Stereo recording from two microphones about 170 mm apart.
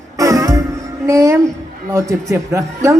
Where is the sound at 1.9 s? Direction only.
20° right (ahead or behind).